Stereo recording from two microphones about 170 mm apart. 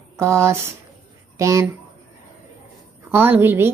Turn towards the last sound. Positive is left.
turn(degrees=-15)  # may be behind; listen again after turning